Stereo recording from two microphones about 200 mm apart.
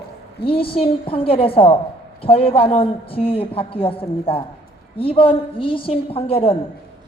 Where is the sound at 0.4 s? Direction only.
25° left (ahead or behind).